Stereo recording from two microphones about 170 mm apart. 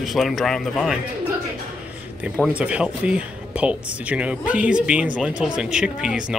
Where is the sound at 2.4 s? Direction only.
5° right (ahead or behind).